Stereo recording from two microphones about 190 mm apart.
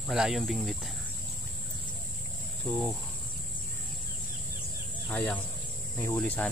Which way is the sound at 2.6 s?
10° left (ahead or behind).